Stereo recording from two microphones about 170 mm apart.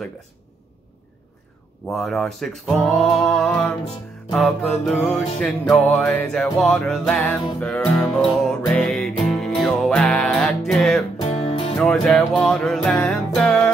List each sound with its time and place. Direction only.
1.9 s music: centre (ahead or behind)
11.1 s music: 40° left (ahead or behind)
11.8 s music: 5° left (ahead or behind)